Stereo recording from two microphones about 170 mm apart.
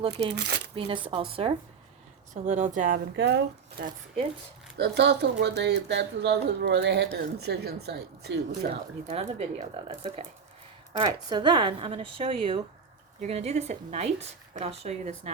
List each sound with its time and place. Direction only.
0.0 s speech: 35° right (ahead or behind)
0.3 s speech: 85° right
0.8 s speech: 30° right (ahead or behind)
2.3 s speech: 45° right (ahead or behind)
3.2 s speech: 90° right; by 8.8 s 75° right (ahead or behind)
9.0 s speech: 40° right (ahead or behind)
11.0 s speech: 25° right (ahead or behind)